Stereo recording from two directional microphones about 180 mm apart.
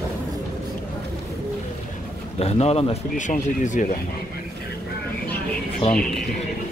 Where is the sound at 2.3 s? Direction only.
35° left (ahead or behind).